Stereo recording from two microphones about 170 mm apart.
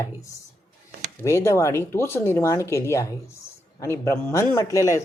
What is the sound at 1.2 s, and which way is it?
Speech, 15° left (ahead or behind).